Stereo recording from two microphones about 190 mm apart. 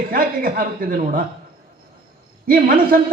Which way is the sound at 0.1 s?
50° right (ahead or behind).